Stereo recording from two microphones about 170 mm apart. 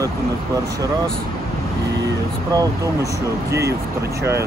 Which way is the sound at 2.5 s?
20° right (ahead or behind).